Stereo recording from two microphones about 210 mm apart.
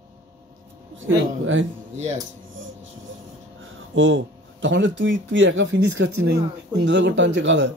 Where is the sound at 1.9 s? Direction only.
35° right (ahead or behind).